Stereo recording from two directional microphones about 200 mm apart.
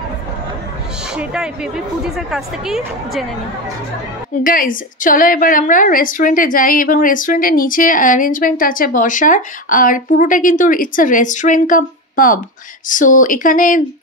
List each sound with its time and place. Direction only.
1.1 s speech: 5° right (ahead or behind)
4.4 s a woman's voice: 45° left (ahead or behind)